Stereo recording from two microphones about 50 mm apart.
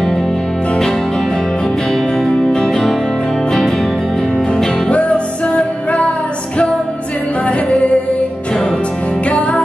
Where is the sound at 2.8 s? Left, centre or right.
Centre.